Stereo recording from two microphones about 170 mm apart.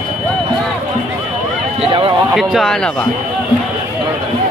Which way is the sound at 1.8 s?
30° right (ahead or behind).